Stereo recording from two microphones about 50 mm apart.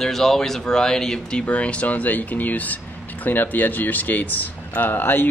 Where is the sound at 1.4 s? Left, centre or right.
Left.